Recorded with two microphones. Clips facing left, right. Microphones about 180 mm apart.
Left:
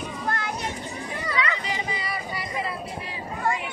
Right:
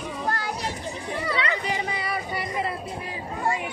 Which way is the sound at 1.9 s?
55° right (ahead or behind).